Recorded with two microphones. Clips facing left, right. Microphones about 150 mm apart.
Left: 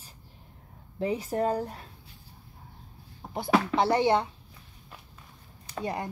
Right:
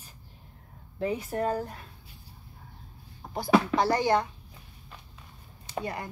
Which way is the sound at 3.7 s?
25° left (ahead or behind).